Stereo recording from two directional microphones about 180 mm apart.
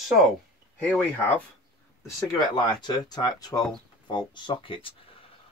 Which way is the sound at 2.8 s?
25° left (ahead or behind).